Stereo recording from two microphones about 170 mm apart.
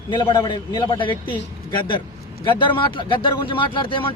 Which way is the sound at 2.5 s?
30° left (ahead or behind).